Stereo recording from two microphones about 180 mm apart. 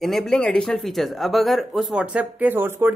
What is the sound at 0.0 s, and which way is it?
Speech, centre (ahead or behind).